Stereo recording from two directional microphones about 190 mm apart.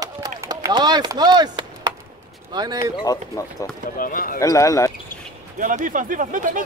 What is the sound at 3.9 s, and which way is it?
Speech, 45° left (ahead or behind).